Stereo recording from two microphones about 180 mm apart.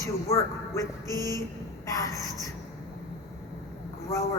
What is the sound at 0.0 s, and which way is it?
Speech, 15° left (ahead or behind).